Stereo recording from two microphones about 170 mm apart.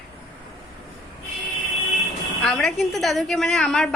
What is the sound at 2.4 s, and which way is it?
Speech, 5° left (ahead or behind).